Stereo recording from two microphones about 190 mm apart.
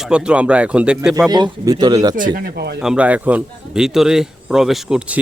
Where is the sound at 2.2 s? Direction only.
50° right (ahead or behind).